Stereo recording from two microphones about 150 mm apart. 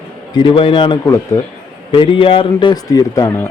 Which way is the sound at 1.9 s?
35° left (ahead or behind).